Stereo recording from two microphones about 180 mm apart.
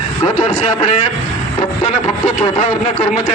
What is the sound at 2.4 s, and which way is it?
Speech, 40° left (ahead or behind).